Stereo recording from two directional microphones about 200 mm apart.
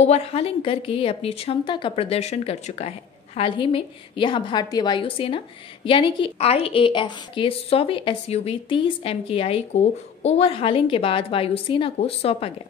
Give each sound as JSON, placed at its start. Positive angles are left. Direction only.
{"t": 0.0, "sound": "a woman's voice", "side_deg": 30}